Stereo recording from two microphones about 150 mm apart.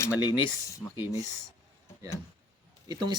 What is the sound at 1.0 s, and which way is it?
Speech, 20° right (ahead or behind).